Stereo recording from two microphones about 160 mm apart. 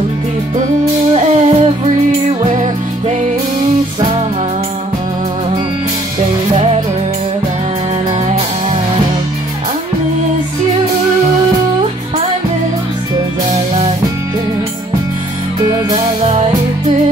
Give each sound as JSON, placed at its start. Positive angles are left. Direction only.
{"t": 1.1, "sound": "music", "side_deg": -40}
{"t": 16.2, "sound": "music", "side_deg": -40}